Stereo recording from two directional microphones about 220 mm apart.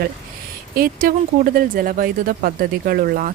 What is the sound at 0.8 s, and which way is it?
Speech, 40° right (ahead or behind).